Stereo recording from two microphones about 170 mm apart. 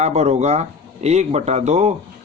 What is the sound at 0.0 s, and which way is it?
Speech, 40° right (ahead or behind).